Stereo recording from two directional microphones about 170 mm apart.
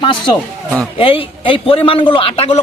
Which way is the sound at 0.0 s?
25° left (ahead or behind).